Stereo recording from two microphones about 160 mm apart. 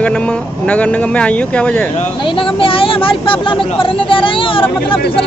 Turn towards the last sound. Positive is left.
turn(degrees=35)  # may be behind; listen again after turning